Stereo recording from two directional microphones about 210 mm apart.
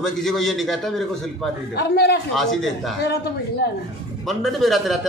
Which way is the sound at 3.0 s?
50° left (ahead or behind).